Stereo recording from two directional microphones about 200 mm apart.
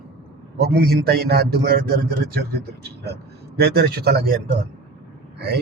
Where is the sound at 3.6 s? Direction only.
50° right (ahead or behind).